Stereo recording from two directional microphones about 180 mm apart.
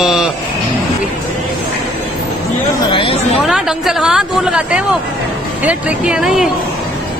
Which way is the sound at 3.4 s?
Centre (ahead or behind).